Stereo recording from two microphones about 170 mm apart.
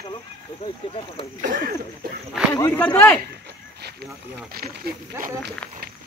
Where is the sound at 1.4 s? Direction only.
50° right (ahead or behind).